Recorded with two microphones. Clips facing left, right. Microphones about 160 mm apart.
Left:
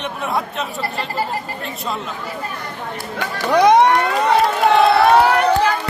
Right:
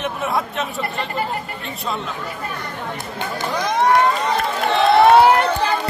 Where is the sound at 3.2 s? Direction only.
80° left.